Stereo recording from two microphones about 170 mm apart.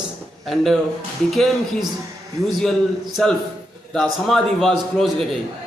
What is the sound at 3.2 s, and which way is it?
A man's voice, 5° left (ahead or behind).